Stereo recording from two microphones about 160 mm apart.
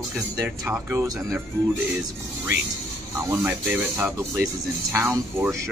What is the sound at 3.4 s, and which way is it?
Speech, 10° right (ahead or behind).